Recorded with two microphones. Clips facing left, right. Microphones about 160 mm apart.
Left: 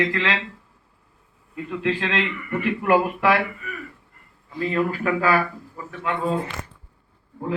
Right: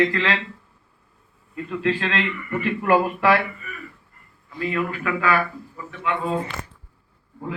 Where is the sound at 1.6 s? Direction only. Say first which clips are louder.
Right 1 dB; 15° left (ahead or behind).